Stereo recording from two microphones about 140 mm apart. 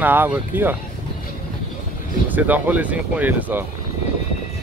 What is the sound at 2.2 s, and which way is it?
Speech, 10° right (ahead or behind).